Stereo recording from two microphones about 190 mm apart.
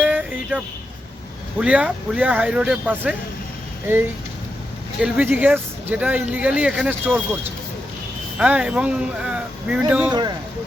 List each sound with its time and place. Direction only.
0.0 s a sound: 10° right (ahead or behind)
1.5 s speech: 5° right (ahead or behind)
10.1 s speech: 20° right (ahead or behind)